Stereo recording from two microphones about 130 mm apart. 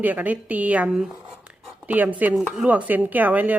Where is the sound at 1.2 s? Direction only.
5° right (ahead or behind).